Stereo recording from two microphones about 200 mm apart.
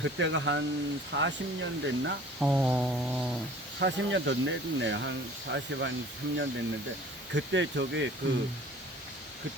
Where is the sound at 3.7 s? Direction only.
60° right (ahead or behind).